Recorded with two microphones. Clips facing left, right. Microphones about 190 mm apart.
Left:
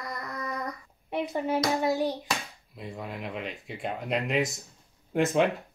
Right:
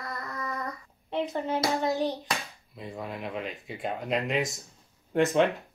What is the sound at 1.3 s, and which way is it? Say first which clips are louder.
Speech: left 2 dB; 15° left (ahead or behind).